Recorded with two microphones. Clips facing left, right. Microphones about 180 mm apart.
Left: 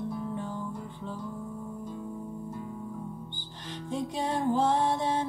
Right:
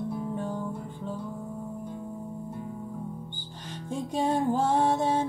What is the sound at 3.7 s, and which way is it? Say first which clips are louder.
Music: right 1 dB; 50° right (ahead or behind).